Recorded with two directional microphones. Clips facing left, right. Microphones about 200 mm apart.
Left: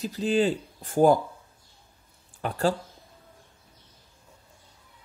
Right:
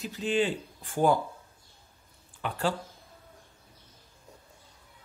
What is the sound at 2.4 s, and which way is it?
Speech, 40° left (ahead or behind).